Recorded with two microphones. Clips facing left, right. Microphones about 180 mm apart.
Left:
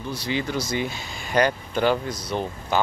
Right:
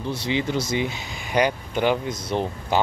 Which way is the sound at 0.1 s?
20° right (ahead or behind).